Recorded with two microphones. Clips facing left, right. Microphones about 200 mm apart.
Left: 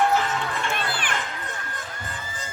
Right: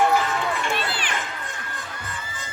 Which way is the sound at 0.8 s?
50° left (ahead or behind).